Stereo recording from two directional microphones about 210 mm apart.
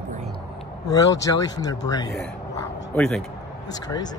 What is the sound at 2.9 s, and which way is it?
Speech, 5° left (ahead or behind).